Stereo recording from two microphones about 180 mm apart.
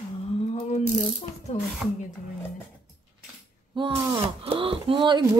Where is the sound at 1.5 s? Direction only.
40° left (ahead or behind).